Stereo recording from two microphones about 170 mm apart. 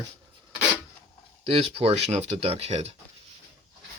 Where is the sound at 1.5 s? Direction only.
35° right (ahead or behind).